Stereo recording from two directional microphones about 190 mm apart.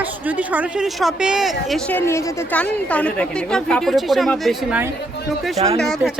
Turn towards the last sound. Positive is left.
turn(degrees=0)  # may be behind; listen again after turning